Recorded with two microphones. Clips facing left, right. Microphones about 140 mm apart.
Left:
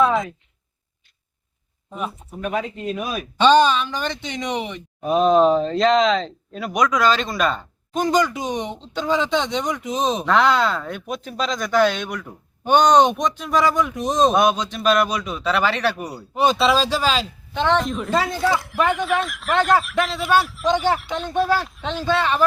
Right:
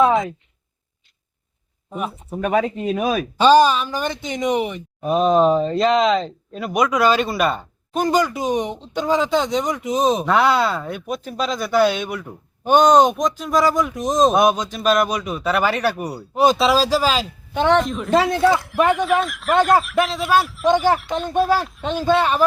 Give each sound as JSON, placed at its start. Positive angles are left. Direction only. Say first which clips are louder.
{"t": 0.0, "sound": "speech", "louder": "right 2 dB", "side_deg": 0}
{"t": 2.3, "sound": "speech", "louder": "right 7 dB", "side_deg": -60}
{"t": 2.9, "sound": "speech", "louder": "right 7 dB", "side_deg": -75}
{"t": 3.3, "sound": "speech", "louder": "right 1 dB", "side_deg": -5}
{"t": 17.8, "sound": "speech", "louder": "right 4 dB", "side_deg": 0}
{"t": 22.0, "sound": "speech", "louder": "right 3 dB", "side_deg": -15}